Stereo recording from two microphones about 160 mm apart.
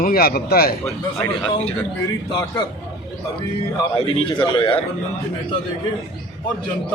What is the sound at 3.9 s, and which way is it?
Speech, 35° left (ahead or behind).